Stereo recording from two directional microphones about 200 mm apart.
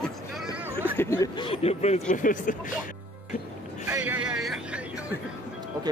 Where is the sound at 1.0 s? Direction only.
15° left (ahead or behind); by 2.7 s 40° left (ahead or behind).